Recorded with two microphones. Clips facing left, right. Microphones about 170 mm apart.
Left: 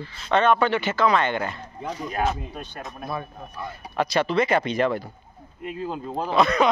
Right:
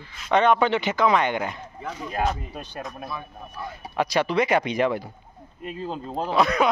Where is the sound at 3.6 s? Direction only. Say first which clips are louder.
Even; 10° right (ahead or behind).